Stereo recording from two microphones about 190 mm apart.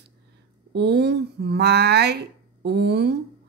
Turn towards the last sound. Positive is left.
turn(degrees=-60)  # may be behind; listen again after turning